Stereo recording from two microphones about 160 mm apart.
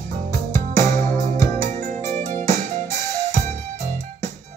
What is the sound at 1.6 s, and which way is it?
Music, 50° right (ahead or behind).